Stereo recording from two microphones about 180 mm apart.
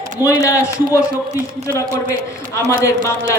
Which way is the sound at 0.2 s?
15° left (ahead or behind).